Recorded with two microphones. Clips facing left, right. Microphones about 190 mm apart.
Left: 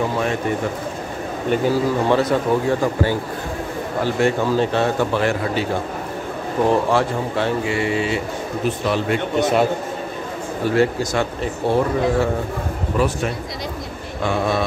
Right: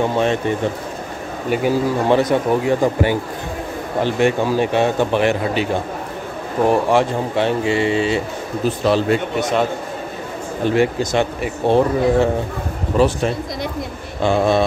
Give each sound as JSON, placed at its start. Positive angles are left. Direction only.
{"t": 1.5, "sound": "speech", "side_deg": -15}
{"t": 6.7, "sound": "speech", "side_deg": -20}
{"t": 9.4, "sound": "a man's voice", "side_deg": 5}
{"t": 10.6, "sound": "speech", "side_deg": -20}
{"t": 14.2, "sound": "speech", "side_deg": -30}